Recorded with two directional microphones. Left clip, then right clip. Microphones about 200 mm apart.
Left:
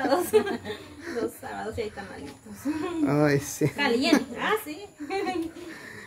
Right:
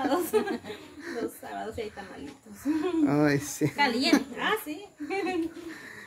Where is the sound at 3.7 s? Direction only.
35° right (ahead or behind).